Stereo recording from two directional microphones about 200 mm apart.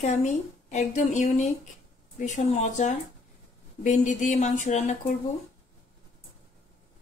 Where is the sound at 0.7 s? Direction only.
35° left (ahead or behind).